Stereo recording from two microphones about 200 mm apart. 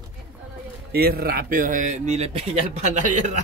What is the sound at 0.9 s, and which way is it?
Speech, 50° right (ahead or behind).